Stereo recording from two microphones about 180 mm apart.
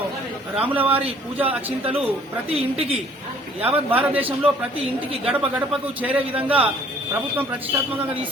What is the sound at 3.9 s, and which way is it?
Speech, 10° right (ahead or behind).